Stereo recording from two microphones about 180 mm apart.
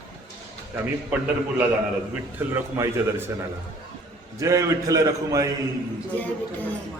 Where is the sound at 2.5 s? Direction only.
15° right (ahead or behind).